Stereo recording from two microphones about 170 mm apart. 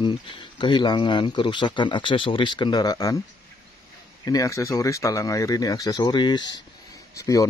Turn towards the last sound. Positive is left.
turn(degrees=20)  # may be behind; listen again after turning